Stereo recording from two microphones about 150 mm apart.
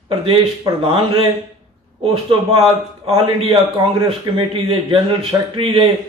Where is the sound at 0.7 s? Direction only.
25° right (ahead or behind).